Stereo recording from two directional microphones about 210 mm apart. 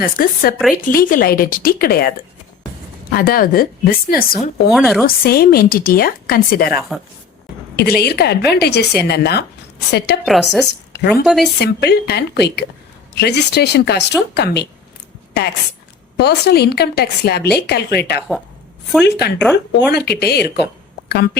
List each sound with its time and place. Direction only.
0.0 s a woman's voice: 40° left (ahead or behind)
4.7 s a woman's voice: centre (ahead or behind)
5.0 s a woman's voice: 45° left (ahead or behind)
6.7 s a woman's voice: centre (ahead or behind)
7.8 s a woman's voice: 50° left (ahead or behind)
10.2 s a woman's voice: centre (ahead or behind)
10.7 s a sound: 55° left (ahead or behind)
11.1 s a woman's voice: centre (ahead or behind)
11.6 s a woman's voice: 50° left (ahead or behind)